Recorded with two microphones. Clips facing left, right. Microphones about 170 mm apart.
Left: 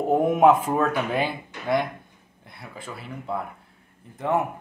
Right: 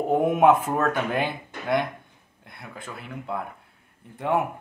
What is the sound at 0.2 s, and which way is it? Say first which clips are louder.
Speech: left 1 dB; centre (ahead or behind).